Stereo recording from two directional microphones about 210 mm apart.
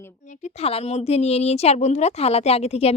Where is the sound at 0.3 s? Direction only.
30° left (ahead or behind).